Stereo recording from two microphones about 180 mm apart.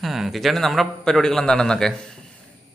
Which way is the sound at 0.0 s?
Centre (ahead or behind).